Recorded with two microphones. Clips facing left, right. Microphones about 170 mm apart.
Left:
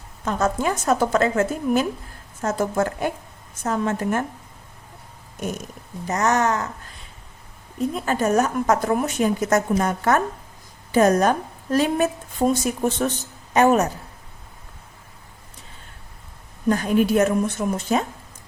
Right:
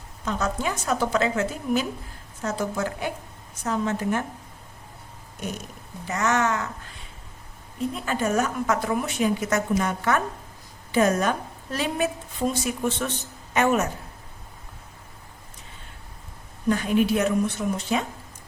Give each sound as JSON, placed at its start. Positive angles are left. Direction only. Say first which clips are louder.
{"t": 0.3, "sound": "a woman's voice", "louder": "left 5 dB", "side_deg": 45}
{"t": 6.1, "sound": "speech", "louder": "left 3 dB", "side_deg": 40}
{"t": 7.8, "sound": "a woman's voice", "louder": "left 4 dB", "side_deg": 45}
{"t": 16.6, "sound": "a woman's voice", "louder": "left 2 dB", "side_deg": 40}